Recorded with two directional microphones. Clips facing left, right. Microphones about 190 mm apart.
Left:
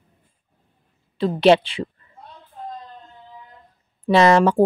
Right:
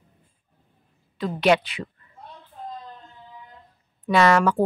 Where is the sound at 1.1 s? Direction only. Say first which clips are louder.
Left 5 dB; 30° left (ahead or behind).